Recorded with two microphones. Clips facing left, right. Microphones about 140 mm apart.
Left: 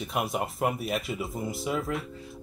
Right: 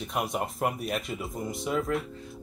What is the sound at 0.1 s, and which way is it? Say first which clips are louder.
Speech: even; centre (ahead or behind).